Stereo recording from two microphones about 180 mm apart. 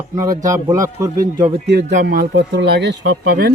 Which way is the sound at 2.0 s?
60° right (ahead or behind).